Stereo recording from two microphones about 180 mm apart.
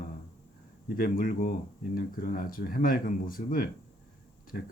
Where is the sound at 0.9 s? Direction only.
55° left (ahead or behind).